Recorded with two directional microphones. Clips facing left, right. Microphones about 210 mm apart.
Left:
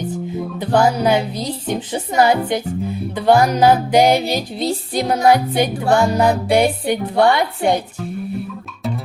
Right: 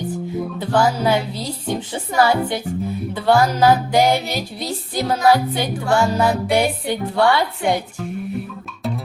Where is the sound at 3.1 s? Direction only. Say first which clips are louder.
Left 3 dB; 20° left (ahead or behind).